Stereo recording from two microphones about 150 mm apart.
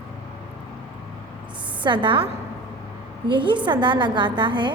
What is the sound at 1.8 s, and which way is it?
Speech, 35° right (ahead or behind).